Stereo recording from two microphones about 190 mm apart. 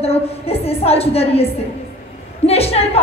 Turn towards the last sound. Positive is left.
turn(degrees=30)  # may be behind; listen again after turning